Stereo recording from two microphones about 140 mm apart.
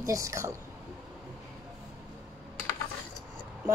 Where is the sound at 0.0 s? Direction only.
25° right (ahead or behind).